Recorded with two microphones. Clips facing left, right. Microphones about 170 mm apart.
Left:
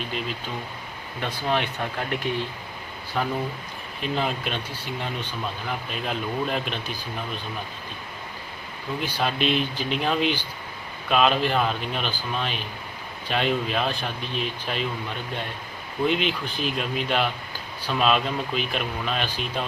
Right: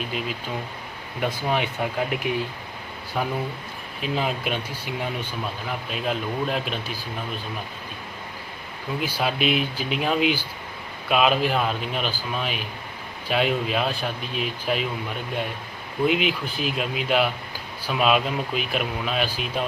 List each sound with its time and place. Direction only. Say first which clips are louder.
1.4 s speech: left 2 dB; 10° right (ahead or behind)
9.0 s speech: right 1 dB; 5° right (ahead or behind)
16.0 s speech: right 2 dB; 5° right (ahead or behind)